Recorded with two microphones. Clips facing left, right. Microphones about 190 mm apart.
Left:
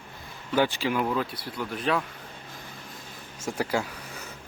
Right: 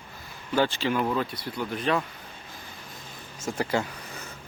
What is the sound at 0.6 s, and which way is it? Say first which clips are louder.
Speech: right 1 dB; 10° left (ahead or behind).